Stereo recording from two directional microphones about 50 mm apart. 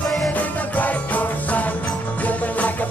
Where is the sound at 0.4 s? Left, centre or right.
Left.